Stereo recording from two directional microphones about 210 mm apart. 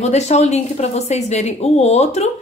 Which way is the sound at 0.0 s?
30° left (ahead or behind).